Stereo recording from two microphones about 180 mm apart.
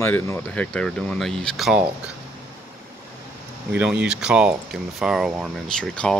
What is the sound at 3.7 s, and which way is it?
Speech, 5° right (ahead or behind).